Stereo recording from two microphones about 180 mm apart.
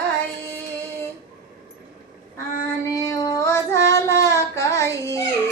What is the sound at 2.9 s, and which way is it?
Child singing, 20° left (ahead or behind).